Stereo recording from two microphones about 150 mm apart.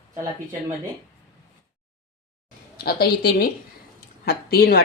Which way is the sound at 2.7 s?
90° left.